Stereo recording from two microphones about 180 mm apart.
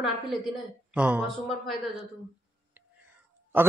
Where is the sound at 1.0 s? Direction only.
5° right (ahead or behind).